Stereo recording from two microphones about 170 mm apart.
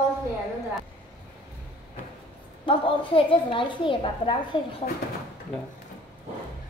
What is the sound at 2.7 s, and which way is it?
A woman's voice, 30° left (ahead or behind).